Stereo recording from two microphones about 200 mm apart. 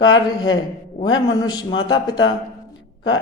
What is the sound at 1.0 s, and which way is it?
A woman's voice, 20° left (ahead or behind).